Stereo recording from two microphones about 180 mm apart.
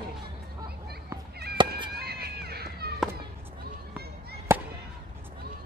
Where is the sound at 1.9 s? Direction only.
60° right (ahead or behind).